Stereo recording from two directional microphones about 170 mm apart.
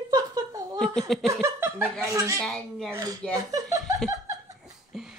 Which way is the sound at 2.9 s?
20° right (ahead or behind).